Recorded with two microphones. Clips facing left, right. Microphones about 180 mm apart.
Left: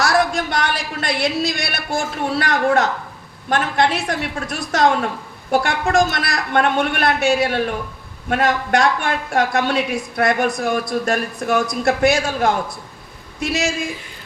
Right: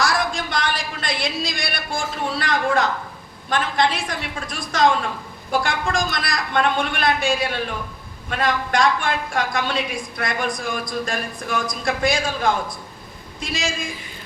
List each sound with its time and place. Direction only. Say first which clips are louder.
0.0 s a man's voice: left 5 dB; 65° left (ahead or behind)